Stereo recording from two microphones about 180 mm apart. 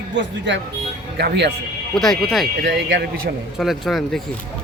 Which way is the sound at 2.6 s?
75° right (ahead or behind).